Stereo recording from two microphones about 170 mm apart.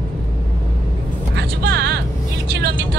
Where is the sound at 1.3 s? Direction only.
80° right.